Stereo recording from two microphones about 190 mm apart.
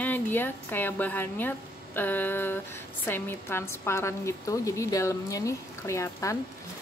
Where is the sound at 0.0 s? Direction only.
10° left (ahead or behind).